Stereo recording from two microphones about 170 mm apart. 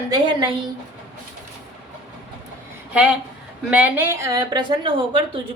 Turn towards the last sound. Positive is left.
turn(degrees=-30)  # may be behind; listen again after turning